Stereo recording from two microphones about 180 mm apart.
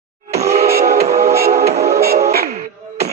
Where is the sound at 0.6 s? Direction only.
60° right (ahead or behind).